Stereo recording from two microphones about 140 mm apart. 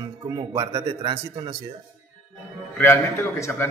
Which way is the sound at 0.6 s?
25° right (ahead or behind).